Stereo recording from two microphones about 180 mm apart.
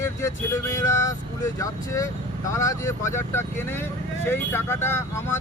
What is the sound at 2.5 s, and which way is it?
Speech, 15° left (ahead or behind).